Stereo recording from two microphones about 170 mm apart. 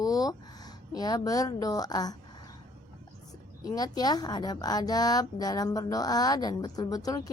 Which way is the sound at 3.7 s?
25° left (ahead or behind).